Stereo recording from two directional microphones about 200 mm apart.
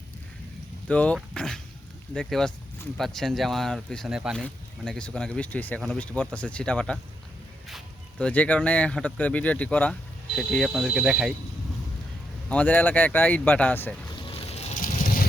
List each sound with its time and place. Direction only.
0.9 s speech: 5° left (ahead or behind)
8.2 s speech: 5° left (ahead or behind)
12.5 s speech: 5° left (ahead or behind)
14.3 s a sound: 30° left (ahead or behind)